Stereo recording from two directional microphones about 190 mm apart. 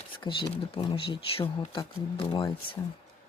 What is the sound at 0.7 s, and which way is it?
Speech, 25° left (ahead or behind).